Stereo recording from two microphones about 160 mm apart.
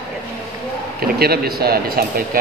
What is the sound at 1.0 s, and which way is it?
Speech, 75° right (ahead or behind).